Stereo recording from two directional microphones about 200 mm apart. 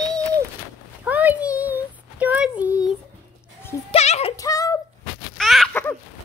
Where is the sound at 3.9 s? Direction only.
30° left (ahead or behind).